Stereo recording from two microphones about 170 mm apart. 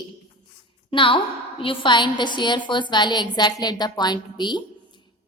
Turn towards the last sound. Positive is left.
turn(degrees=25)  # may be behind; listen again after turning